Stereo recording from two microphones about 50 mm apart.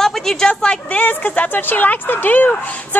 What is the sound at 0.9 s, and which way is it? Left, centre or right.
Speech, left.